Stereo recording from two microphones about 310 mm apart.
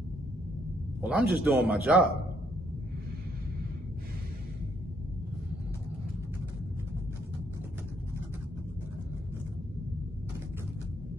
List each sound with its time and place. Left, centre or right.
1.0 s speech: centre